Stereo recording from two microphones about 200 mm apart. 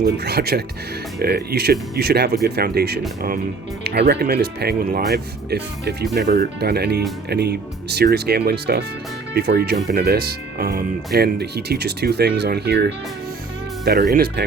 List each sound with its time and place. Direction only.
0.0 s speech: 50° right (ahead or behind)